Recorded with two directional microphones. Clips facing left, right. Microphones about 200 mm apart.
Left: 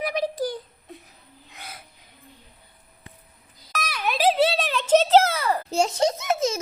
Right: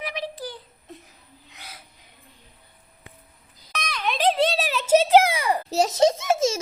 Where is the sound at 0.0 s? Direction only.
45° left (ahead or behind).